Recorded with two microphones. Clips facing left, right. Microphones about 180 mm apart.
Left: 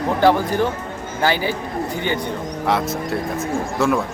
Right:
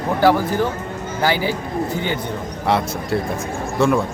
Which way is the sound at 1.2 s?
15° right (ahead or behind).